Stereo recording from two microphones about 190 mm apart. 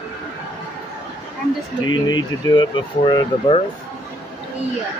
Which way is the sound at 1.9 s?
20° left (ahead or behind).